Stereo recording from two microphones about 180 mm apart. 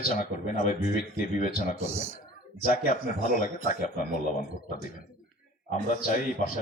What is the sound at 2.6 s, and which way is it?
A man's voice, 50° left (ahead or behind).